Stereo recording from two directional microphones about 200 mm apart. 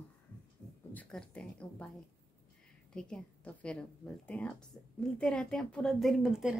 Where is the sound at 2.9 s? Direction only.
5° left (ahead or behind).